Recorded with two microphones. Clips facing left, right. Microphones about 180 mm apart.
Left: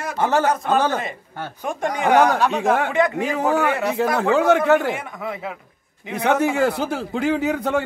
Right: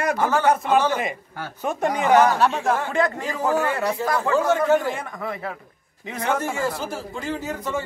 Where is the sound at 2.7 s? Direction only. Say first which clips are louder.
Left 3 dB; 65° left (ahead or behind).